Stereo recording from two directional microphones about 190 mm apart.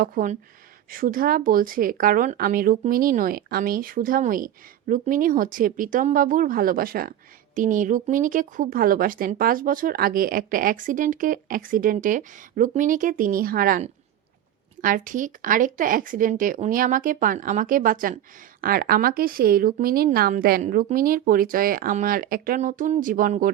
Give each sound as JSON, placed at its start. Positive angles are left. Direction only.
{"t": 0.0, "sound": "speech", "side_deg": -45}